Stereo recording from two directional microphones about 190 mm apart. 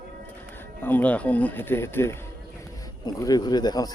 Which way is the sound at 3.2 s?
20° left (ahead or behind).